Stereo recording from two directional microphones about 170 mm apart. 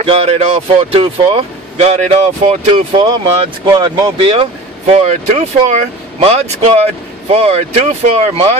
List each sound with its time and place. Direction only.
0.0 s speech: 35° right (ahead or behind)